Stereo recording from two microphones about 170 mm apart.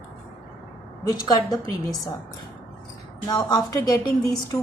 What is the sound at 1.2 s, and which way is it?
Speech, 20° left (ahead or behind).